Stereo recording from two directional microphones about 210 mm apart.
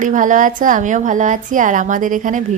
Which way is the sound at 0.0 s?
40° right (ahead or behind).